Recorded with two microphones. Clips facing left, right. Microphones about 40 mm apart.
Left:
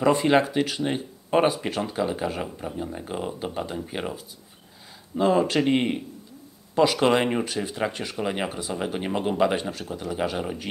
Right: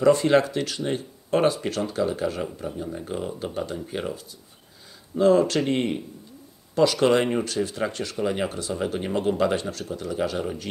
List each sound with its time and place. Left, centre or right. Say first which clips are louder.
0.0 s speech: right 1 dB; centre